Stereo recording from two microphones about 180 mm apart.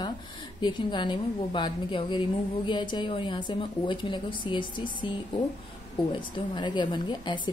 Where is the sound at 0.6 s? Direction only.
25° left (ahead or behind).